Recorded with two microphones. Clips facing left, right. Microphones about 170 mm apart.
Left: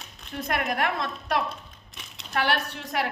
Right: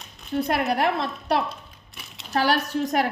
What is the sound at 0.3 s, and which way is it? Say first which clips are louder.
Speech: right 5 dB; 30° right (ahead or behind).